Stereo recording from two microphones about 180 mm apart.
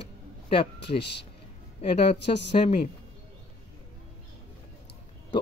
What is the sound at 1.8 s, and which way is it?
Speech, 30° left (ahead or behind).